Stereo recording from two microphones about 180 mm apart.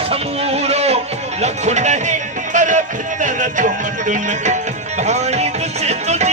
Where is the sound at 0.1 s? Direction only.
35° right (ahead or behind).